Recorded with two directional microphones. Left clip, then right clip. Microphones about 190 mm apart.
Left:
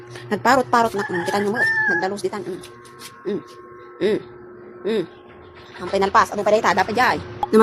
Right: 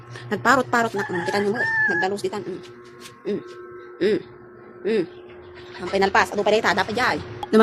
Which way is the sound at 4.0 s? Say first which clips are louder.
Left 1 dB; centre (ahead or behind).